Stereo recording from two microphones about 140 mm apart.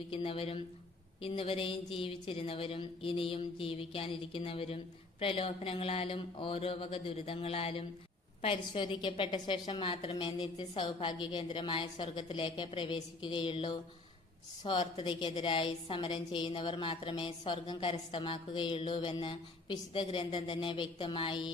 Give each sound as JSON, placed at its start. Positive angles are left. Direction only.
{"t": 0.1, "sound": "a woman's voice", "side_deg": 40}